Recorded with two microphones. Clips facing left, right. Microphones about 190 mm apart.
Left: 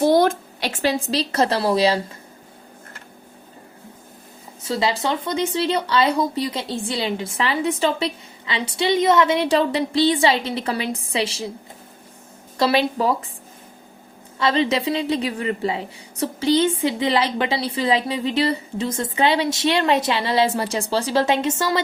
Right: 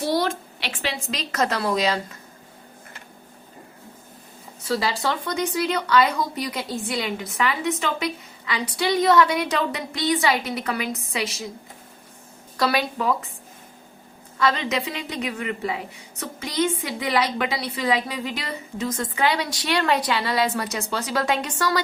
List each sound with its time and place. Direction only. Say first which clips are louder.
0.0 s a woman's voice: left 7 dB; 50° left (ahead or behind); by 2.1 s 30° left (ahead or behind)
4.7 s a woman's voice: left 2 dB; 20° left (ahead or behind)
12.5 s a woman's voice: left 4 dB; 25° left (ahead or behind)
14.3 s a woman's voice: left 4 dB; 30° left (ahead or behind)